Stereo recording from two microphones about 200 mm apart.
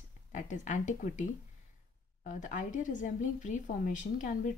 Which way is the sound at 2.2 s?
40° left (ahead or behind).